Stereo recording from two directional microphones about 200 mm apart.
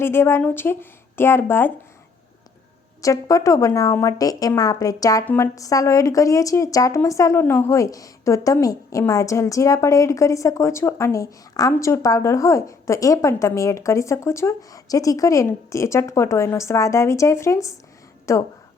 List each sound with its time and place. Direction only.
0.0 s a woman's voice: 10° left (ahead or behind)
3.0 s a woman's voice: 15° left (ahead or behind)